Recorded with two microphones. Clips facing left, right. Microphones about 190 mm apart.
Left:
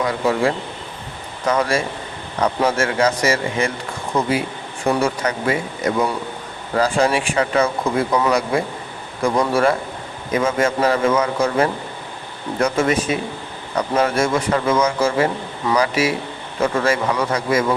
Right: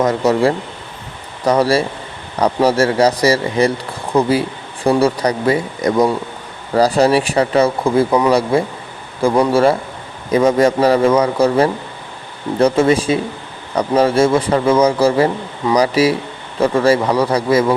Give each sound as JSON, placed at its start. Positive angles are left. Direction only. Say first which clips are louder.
{"t": 0.0, "sound": "speech", "louder": "right 5 dB", "side_deg": -40}